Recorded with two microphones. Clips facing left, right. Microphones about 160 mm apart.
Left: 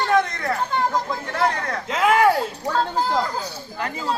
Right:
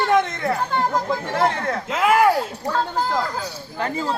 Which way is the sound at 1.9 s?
5° right (ahead or behind).